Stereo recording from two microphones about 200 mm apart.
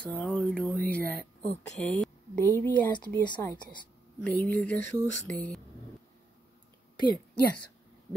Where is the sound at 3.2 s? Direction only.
20° left (ahead or behind).